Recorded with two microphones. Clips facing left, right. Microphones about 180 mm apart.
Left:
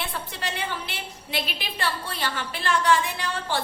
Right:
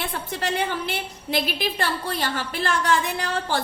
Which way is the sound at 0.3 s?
45° right (ahead or behind).